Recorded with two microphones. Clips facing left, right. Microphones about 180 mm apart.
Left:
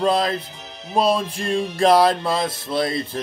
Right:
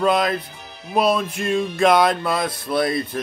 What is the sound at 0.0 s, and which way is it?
Music, 30° left (ahead or behind).